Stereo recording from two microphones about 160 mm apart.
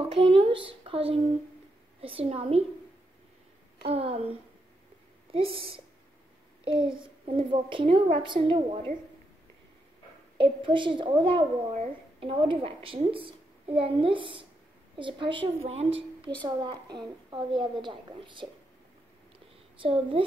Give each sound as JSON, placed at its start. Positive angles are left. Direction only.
{"t": 0.0, "sound": "a woman's voice", "side_deg": -35}
{"t": 3.8, "sound": "a woman's voice", "side_deg": -40}
{"t": 10.3, "sound": "a woman's voice", "side_deg": -30}
{"t": 16.4, "sound": "a woman's voice", "side_deg": -25}
{"t": 19.8, "sound": "a woman's voice", "side_deg": -35}